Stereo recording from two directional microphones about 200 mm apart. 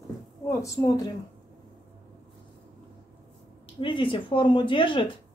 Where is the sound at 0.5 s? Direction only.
15° left (ahead or behind).